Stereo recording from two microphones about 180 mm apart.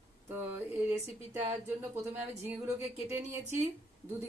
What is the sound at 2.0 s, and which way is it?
Speech, 40° right (ahead or behind).